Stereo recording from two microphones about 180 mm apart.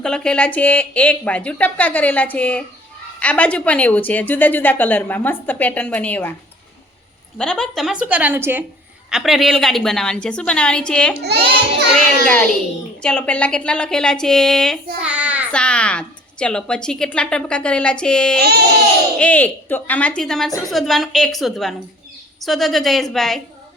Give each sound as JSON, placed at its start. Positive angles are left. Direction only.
{"t": 0.0, "sound": "a woman's voice", "side_deg": 5}
{"t": 7.3, "sound": "a woman's voice", "side_deg": 5}
{"t": 11.2, "sound": "a child's voice", "side_deg": -65}
{"t": 12.2, "sound": "a woman's voice", "side_deg": 5}
{"t": 15.0, "sound": "child singing", "side_deg": -5}
{"t": 15.5, "sound": "a woman's voice", "side_deg": 5}